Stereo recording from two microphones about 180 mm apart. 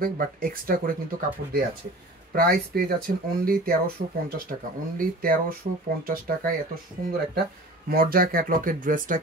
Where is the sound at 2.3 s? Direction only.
55° right (ahead or behind).